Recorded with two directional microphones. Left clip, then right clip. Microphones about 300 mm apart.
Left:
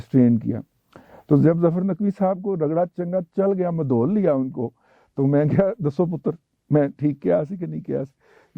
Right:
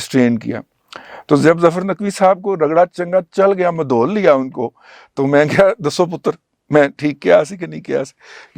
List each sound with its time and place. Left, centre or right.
0.0 s speech: centre